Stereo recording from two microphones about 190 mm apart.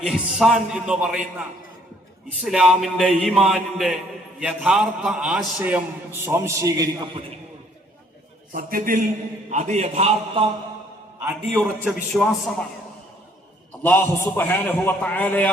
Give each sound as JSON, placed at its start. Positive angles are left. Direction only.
{"t": 0.0, "sound": "speech", "side_deg": -5}
{"t": 2.4, "sound": "a man's voice", "side_deg": -5}
{"t": 8.5, "sound": "a man's voice", "side_deg": -45}
{"t": 11.5, "sound": "speech", "side_deg": 0}
{"t": 13.8, "sound": "a man's voice", "side_deg": 10}